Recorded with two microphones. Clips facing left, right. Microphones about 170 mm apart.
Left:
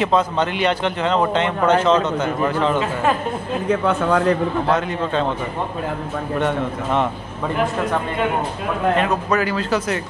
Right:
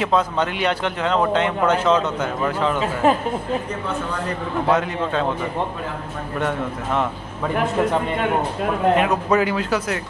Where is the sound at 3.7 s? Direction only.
75° left (ahead or behind).